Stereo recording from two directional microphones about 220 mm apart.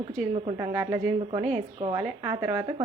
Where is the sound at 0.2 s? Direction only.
25° right (ahead or behind).